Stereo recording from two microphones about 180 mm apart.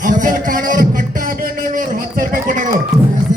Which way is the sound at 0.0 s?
45° right (ahead or behind).